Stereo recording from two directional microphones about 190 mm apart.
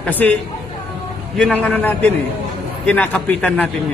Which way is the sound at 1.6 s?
5° left (ahead or behind).